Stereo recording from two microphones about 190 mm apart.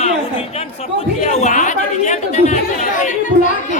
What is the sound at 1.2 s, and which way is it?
Speech, 35° left (ahead or behind).